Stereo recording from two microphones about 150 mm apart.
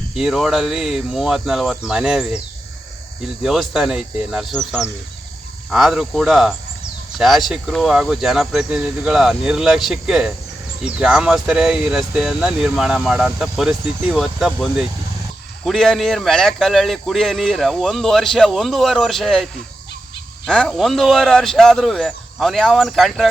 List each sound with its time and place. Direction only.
0.2 s speech: 5° right (ahead or behind)
3.4 s speech: 5° right (ahead or behind)
20.5 s speech: centre (ahead or behind)